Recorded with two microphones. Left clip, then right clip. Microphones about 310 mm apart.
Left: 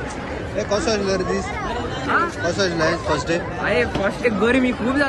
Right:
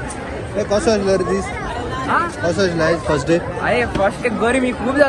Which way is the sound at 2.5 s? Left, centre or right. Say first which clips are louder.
Right 5 dB; centre.